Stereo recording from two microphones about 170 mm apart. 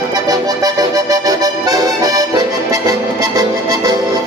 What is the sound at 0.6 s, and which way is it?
Accordion, 20° right (ahead or behind).